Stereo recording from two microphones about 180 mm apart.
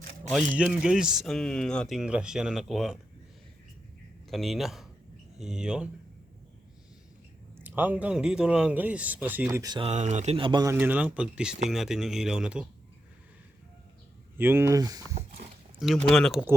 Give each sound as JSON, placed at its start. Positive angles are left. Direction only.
{"t": 0.5, "sound": "speech", "side_deg": -5}
{"t": 4.3, "sound": "speech", "side_deg": 0}
{"t": 7.6, "sound": "speech", "side_deg": -10}
{"t": 9.8, "sound": "speech", "side_deg": -40}
{"t": 14.3, "sound": "speech", "side_deg": -10}
{"t": 16.0, "sound": "speech", "side_deg": 0}